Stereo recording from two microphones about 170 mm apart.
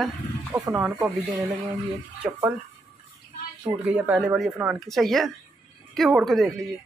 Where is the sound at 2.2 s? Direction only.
5° right (ahead or behind).